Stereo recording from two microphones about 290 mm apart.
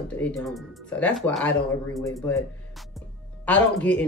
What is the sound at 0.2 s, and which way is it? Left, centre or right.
Speech, centre.